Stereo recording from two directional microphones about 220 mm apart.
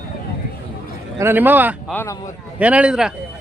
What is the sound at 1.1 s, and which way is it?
Speech, 10° right (ahead or behind).